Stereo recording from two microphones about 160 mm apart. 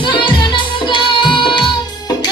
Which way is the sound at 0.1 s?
30° left (ahead or behind).